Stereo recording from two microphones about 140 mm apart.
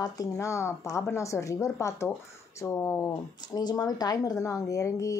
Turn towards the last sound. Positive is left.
turn(degrees=25)  # may be behind; listen again after turning